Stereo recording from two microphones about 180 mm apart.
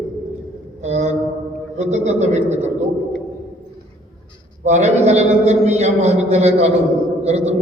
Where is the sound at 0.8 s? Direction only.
40° right (ahead or behind).